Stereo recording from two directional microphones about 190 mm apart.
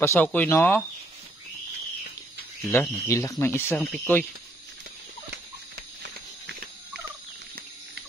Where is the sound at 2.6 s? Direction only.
15° left (ahead or behind).